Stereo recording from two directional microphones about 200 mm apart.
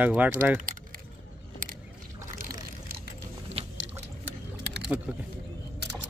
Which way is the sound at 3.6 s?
30° right (ahead or behind).